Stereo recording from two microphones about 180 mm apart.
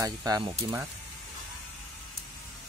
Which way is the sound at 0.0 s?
20° right (ahead or behind).